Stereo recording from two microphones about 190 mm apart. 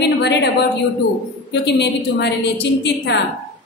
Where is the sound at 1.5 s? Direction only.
65° left (ahead or behind).